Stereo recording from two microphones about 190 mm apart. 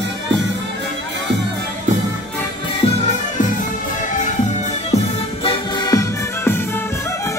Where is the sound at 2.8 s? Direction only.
30° left (ahead or behind).